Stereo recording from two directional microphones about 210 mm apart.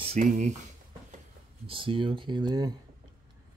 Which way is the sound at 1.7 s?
25° right (ahead or behind).